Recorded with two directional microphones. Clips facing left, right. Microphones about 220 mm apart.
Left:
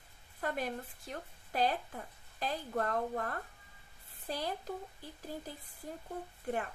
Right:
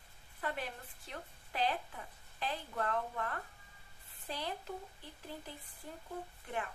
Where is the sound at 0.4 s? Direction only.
45° left (ahead or behind).